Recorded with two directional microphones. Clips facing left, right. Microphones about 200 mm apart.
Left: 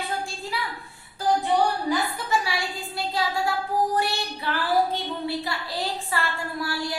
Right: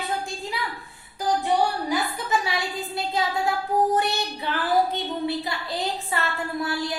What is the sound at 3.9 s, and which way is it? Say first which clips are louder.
Child singing: right 1 dB; 20° right (ahead or behind).